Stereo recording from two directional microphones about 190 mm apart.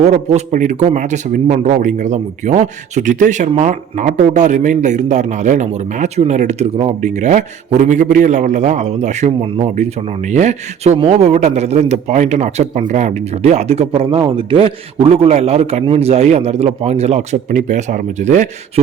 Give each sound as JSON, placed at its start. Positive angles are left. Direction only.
{"t": 0.0, "sound": "speech", "side_deg": -35}